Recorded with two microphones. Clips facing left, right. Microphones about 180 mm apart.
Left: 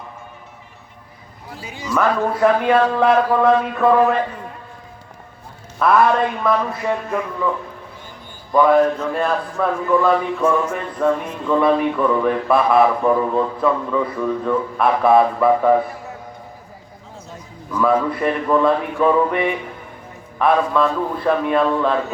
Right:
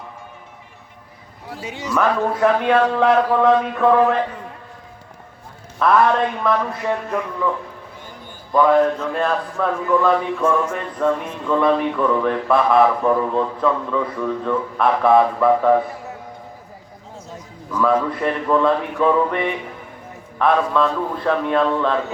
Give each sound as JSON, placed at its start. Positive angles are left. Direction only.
{"t": 1.6, "sound": "a man's voice", "side_deg": -75}
{"t": 1.9, "sound": "speech", "side_deg": 5}
{"t": 5.8, "sound": "speech", "side_deg": 5}
{"t": 8.5, "sound": "speech", "side_deg": 10}
{"t": 17.7, "sound": "speech", "side_deg": 10}